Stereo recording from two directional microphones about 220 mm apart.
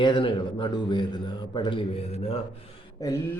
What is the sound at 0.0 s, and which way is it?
Speech, 20° left (ahead or behind).